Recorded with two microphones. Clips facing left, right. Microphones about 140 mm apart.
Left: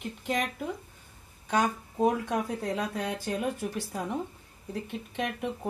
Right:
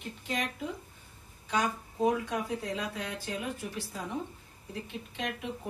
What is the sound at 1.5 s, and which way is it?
Speech, 50° left (ahead or behind).